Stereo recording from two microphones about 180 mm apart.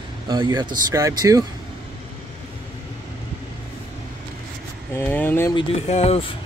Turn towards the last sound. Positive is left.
turn(degrees=35)  # may be behind; listen again after turning